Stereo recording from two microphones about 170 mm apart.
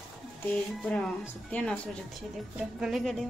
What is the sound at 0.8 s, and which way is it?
A woman's voice, 5° left (ahead or behind).